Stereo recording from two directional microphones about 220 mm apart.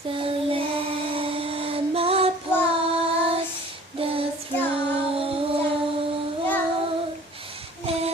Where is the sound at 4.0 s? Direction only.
25° right (ahead or behind).